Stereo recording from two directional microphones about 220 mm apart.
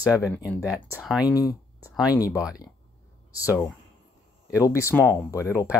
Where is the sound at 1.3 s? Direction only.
15° left (ahead or behind).